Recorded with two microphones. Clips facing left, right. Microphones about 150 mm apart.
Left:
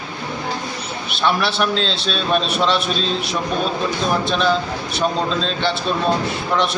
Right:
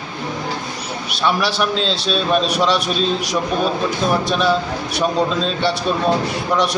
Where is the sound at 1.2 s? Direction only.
5° right (ahead or behind).